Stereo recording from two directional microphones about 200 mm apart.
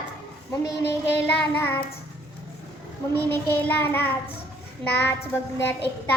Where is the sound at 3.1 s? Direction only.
10° left (ahead or behind).